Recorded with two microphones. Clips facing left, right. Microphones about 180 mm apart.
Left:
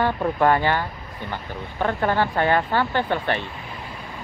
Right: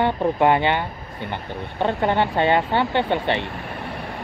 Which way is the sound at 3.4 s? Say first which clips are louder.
Right 4 dB; 65° right (ahead or behind).